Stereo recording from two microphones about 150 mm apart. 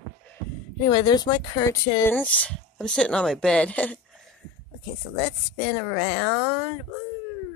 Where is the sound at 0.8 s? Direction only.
25° left (ahead or behind).